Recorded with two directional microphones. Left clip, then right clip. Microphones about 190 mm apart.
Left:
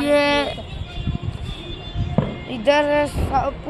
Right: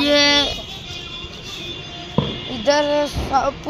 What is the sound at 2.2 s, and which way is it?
Music, 40° left (ahead or behind).